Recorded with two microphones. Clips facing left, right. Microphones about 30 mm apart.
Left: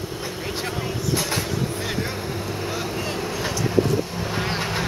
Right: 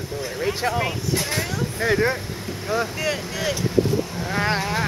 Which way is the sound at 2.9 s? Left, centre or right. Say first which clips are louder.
Right 3 dB; right.